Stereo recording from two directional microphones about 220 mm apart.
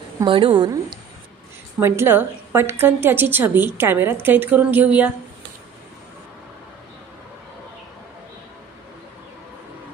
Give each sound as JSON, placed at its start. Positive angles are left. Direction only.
{"t": 0.2, "sound": "a woman's voice", "side_deg": -25}